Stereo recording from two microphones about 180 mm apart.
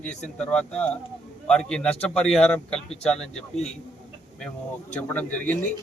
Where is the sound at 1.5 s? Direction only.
5° left (ahead or behind).